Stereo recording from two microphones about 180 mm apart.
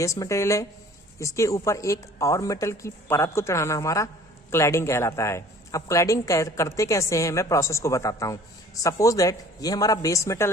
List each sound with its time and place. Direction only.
0.0 s speech: 15° left (ahead or behind)